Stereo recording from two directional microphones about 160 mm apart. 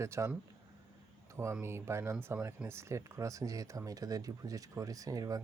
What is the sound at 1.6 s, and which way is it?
Speech, 15° right (ahead or behind).